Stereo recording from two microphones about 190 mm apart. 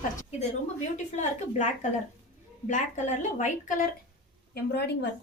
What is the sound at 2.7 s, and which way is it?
A woman's voice, 40° left (ahead or behind).